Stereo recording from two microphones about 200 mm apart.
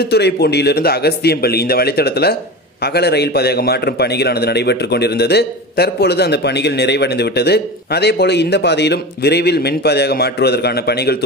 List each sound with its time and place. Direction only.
0.0 s a man's voice: 55° left (ahead or behind)